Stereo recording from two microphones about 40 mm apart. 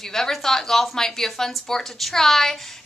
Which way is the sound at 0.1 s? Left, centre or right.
Centre.